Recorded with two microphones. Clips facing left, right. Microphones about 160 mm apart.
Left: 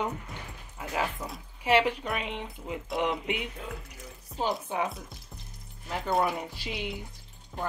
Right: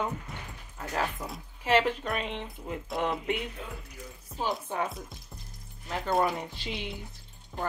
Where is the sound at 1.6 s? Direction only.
10° left (ahead or behind).